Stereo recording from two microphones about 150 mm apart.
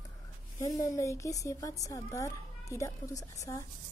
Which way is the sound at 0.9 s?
20° left (ahead or behind).